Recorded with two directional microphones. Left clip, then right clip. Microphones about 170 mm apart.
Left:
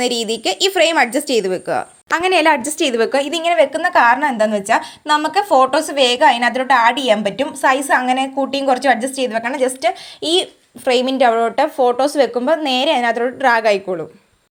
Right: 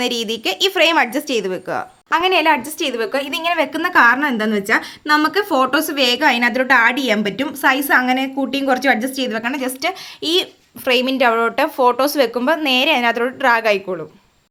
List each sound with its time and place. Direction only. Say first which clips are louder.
0.0 s a woman's voice: left 2 dB; 5° left (ahead or behind)
2.0 s a woman's voice: left 1 dB; 25° left (ahead or behind)
3.5 s a woman's voice: left 3 dB; 5° left (ahead or behind)